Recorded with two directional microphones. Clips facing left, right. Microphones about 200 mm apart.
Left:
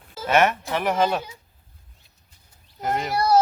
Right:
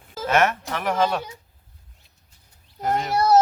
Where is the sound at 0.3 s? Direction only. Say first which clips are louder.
Left 1 dB; 5° left (ahead or behind).